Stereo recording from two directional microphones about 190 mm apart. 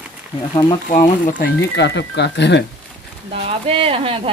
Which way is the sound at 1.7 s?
65° left (ahead or behind).